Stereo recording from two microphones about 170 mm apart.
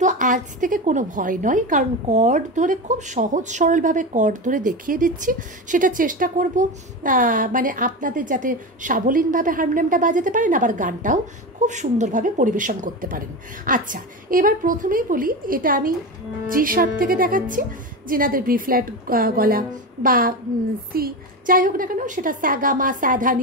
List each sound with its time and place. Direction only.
0.0 s a woman's voice: 50° right (ahead or behind)